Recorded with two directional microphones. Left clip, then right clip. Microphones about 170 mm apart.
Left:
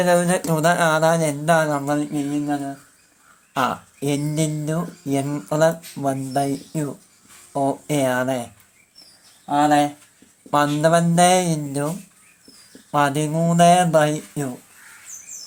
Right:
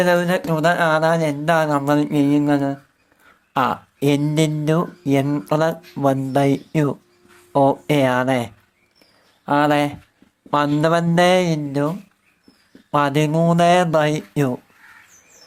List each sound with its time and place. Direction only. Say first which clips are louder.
0.0 s speech: right 1 dB; 5° right (ahead or behind)
2.0 s speech: right 6 dB; 40° right (ahead or behind)
3.5 s speech: right 2 dB; 20° right (ahead or behind)
9.5 s speech: even; 45° right (ahead or behind)
10.5 s speech: even; 20° right (ahead or behind)